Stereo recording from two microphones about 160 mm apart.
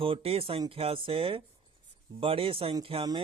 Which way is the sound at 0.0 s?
35° right (ahead or behind).